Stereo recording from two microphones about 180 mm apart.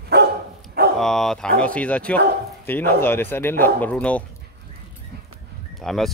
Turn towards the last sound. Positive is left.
turn(degrees=0)  # may be behind; listen again after turning